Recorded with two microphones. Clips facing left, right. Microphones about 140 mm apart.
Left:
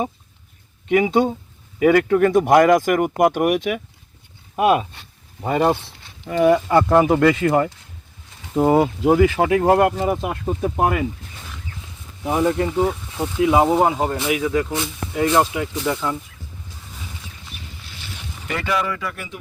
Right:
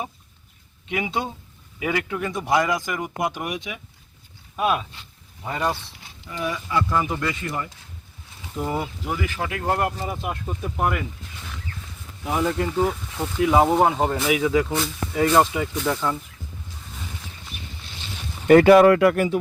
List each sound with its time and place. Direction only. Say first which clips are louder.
0.9 s speech: left 10 dB; 45° left (ahead or behind)
4.5 s a sound: left 6 dB; 45° left (ahead or behind)
5.5 s speech: left 8 dB; 60° left (ahead or behind)
8.5 s speech: left 11 dB; 65° left (ahead or behind); by 9.9 s 90° left
10.0 s speech: left 7 dB; 75° left (ahead or behind)
12.2 s speech: left 4 dB; 20° left (ahead or behind)
13.7 s speech: left 1 dB; 5° left (ahead or behind)
18.4 s speech: right 12 dB; 50° right (ahead or behind); by 19.1 s 65° right (ahead or behind)
19.1 s speech: right 13 dB; 45° right (ahead or behind)